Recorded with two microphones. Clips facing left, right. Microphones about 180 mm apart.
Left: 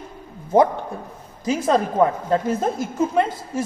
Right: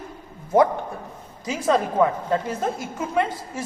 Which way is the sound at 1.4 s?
35° left (ahead or behind).